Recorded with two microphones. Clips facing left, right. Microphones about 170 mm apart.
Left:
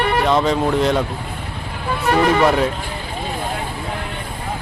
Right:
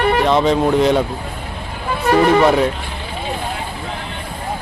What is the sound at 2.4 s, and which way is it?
Speech, centre (ahead or behind).